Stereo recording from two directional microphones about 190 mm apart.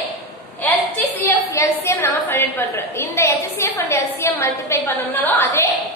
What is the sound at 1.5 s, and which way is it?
A woman's voice, 15° left (ahead or behind).